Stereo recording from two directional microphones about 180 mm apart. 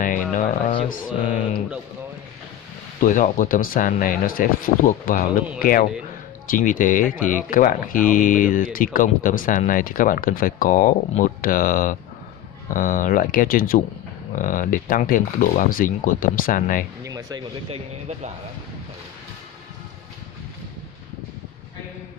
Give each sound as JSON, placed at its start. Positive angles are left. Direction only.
{"t": 0.0, "sound": "a sound", "side_deg": 45}
{"t": 0.8, "sound": "speech", "side_deg": 45}
{"t": 3.0, "sound": "speech", "side_deg": 45}
{"t": 17.0, "sound": "speech", "side_deg": -20}
{"t": 17.6, "sound": "speech", "side_deg": -40}